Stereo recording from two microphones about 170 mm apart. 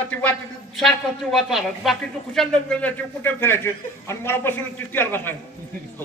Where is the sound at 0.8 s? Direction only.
Centre (ahead or behind).